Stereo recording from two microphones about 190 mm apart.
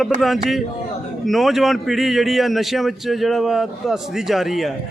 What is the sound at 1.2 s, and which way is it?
A man's voice, centre (ahead or behind).